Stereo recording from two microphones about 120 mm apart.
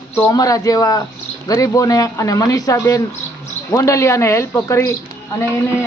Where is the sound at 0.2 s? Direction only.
30° left (ahead or behind).